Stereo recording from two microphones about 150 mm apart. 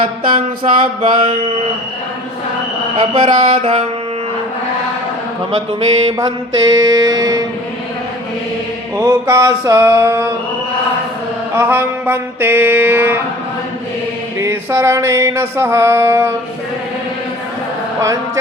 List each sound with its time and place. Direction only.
0.0 s mantra: 35° right (ahead or behind)
3.2 s mantra: 50° right (ahead or behind)
5.5 s mantra: 35° right (ahead or behind)
9.0 s mantra: 20° right (ahead or behind)
11.5 s a sound: 15° right (ahead or behind)
14.3 s a sound: 20° right (ahead or behind)